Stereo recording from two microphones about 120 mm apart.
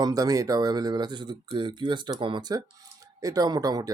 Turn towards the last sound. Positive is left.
turn(degrees=-30)  # may be behind; listen again after turning